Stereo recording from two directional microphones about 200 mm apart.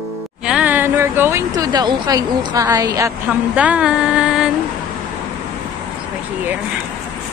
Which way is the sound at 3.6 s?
5° right (ahead or behind).